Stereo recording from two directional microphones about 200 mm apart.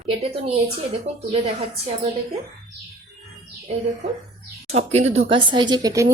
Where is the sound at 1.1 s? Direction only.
30° right (ahead or behind).